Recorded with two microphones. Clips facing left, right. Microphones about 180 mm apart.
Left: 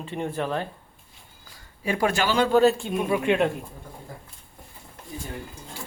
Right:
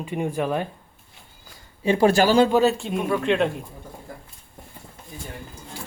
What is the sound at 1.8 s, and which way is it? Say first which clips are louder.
Speech: right 7 dB; 25° right (ahead or behind).